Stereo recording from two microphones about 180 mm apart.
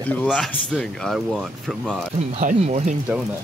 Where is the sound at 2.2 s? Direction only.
35° right (ahead or behind).